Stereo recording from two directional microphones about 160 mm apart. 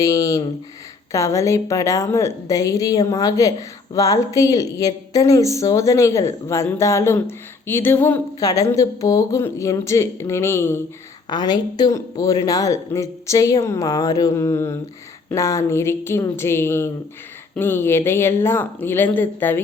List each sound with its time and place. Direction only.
0.0 s a woman's voice: 20° left (ahead or behind)
11.3 s a woman's voice: 25° left (ahead or behind)